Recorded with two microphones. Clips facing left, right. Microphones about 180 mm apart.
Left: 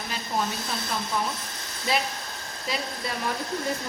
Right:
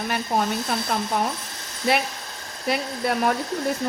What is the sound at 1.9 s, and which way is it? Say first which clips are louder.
A woman's voice: right 4 dB; 65° right (ahead or behind).